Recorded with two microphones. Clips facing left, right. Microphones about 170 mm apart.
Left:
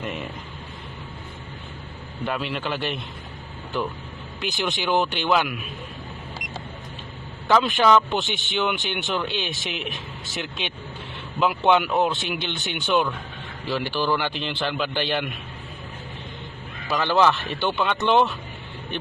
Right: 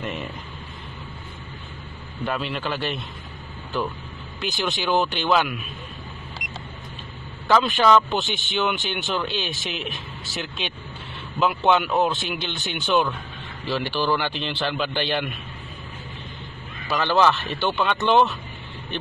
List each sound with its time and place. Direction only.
2.2 s speech: 15° left (ahead or behind)
4.4 s speech: 15° left (ahead or behind)
6.4 s vehicle: centre (ahead or behind)
7.6 s speech: 15° left (ahead or behind)
16.9 s speech: 15° left (ahead or behind)